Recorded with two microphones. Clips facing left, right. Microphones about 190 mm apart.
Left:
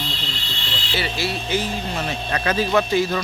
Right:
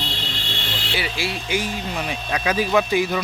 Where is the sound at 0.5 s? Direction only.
50° right (ahead or behind).